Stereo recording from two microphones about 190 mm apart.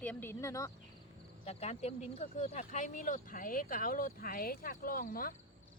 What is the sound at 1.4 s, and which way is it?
Speech, 35° left (ahead or behind).